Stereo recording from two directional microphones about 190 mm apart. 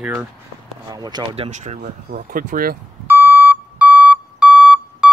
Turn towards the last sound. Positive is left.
turn(degrees=-5)  # may be behind; listen again after turning